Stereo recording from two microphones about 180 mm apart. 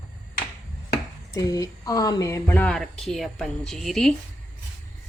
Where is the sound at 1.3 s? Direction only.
20° left (ahead or behind); by 4.1 s centre (ahead or behind).